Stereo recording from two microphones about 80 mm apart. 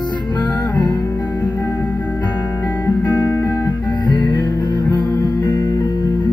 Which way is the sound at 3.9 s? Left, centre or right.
Left.